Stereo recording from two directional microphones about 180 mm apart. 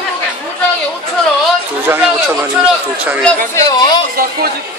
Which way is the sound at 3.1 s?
Centre (ahead or behind).